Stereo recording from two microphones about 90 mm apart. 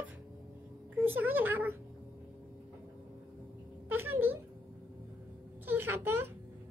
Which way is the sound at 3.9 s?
20° right (ahead or behind).